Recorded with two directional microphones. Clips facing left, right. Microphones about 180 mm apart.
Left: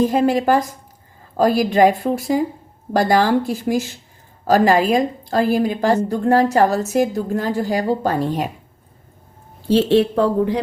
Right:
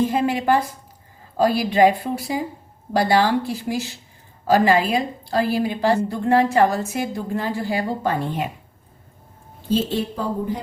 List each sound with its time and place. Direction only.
0.0 s a woman's voice: 40° left (ahead or behind)
9.6 s speech: 70° left (ahead or behind)